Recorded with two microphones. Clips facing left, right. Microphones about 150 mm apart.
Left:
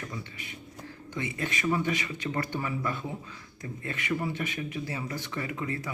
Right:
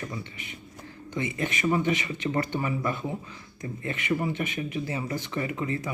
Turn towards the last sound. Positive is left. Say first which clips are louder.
# right 4 dB
turn(degrees=-20)  # may be behind; listen again after turning